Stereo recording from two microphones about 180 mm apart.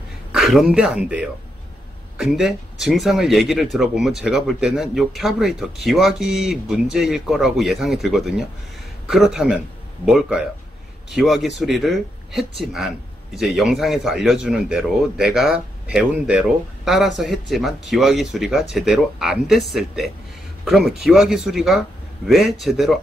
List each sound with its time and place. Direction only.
0.3 s a man's voice: centre (ahead or behind)